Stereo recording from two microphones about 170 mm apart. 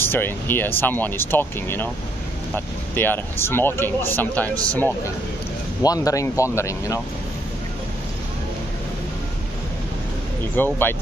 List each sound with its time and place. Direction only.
0.0 s speech: 10° left (ahead or behind)
5.8 s speech: 20° left (ahead or behind)
10.5 s speech: 10° left (ahead or behind)